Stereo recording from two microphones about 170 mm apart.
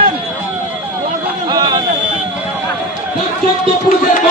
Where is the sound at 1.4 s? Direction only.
25° right (ahead or behind).